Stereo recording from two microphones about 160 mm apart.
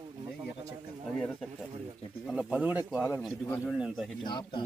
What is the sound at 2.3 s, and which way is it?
Speech, 5° right (ahead or behind).